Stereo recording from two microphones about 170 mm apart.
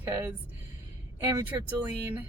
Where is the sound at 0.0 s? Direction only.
10° right (ahead or behind).